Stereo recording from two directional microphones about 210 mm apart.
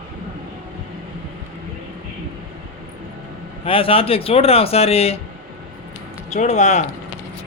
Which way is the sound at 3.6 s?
25° left (ahead or behind).